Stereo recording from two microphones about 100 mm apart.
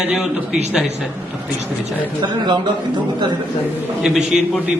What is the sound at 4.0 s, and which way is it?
Speech, 5° right (ahead or behind).